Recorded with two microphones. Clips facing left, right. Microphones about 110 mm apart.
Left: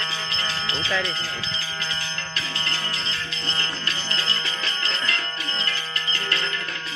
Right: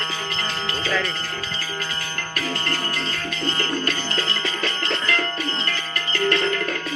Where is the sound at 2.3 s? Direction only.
50° right (ahead or behind).